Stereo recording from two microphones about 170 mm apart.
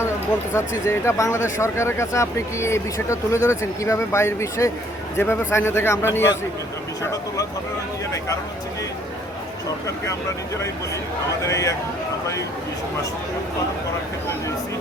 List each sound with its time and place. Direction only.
0.5 s speech: 15° left (ahead or behind)
11.4 s speech: 20° left (ahead or behind)